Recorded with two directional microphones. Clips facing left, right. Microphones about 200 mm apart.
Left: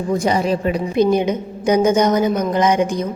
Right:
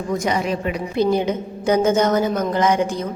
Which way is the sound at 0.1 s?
30° left (ahead or behind).